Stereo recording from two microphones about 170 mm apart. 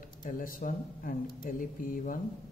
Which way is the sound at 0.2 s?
55° left (ahead or behind).